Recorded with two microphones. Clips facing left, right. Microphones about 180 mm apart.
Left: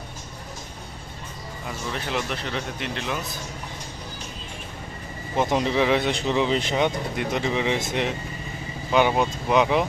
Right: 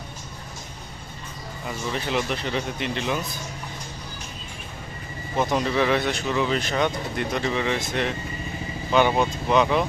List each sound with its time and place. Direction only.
1.6 s speech: centre (ahead or behind)
5.4 s speech: 20° left (ahead or behind)